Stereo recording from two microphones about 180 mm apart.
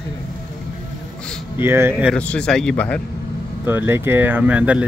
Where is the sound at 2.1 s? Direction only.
5° left (ahead or behind).